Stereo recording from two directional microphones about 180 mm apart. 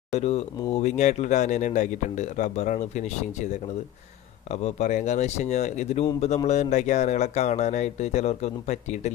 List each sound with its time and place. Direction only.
0.1 s speech: 35° left (ahead or behind)
4.5 s speech: 40° left (ahead or behind)